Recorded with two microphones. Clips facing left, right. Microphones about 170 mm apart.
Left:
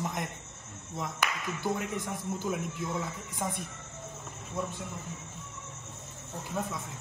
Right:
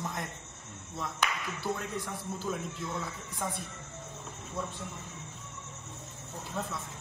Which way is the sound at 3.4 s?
5° left (ahead or behind).